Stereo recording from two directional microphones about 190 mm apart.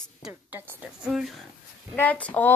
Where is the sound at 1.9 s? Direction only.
10° left (ahead or behind).